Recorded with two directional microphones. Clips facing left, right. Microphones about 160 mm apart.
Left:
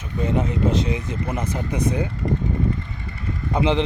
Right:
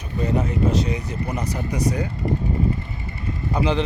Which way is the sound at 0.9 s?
25° left (ahead or behind).